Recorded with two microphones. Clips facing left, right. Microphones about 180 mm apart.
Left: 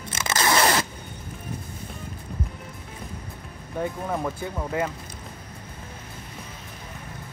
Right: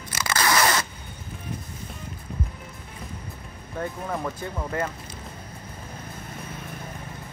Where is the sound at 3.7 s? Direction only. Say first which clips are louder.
Left 2 dB; 5° left (ahead or behind).